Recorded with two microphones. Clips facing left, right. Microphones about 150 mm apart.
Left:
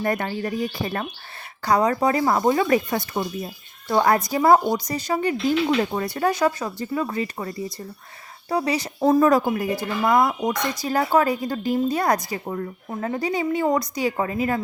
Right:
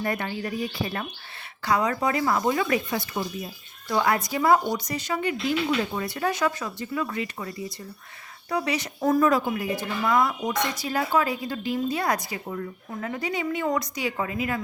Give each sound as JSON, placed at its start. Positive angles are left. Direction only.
{"t": 0.0, "sound": "speech", "side_deg": 40}
{"t": 9.2, "sound": "speech", "side_deg": 40}